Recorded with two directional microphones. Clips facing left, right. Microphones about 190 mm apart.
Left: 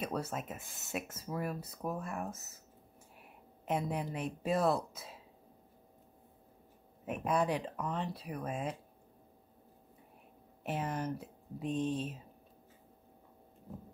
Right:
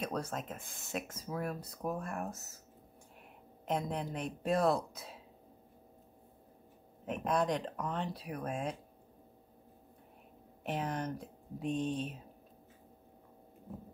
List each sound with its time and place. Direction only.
0.0 s speech: 5° left (ahead or behind)
3.6 s speech: 5° left (ahead or behind)
7.1 s speech: 5° left (ahead or behind)
10.6 s speech: 5° left (ahead or behind)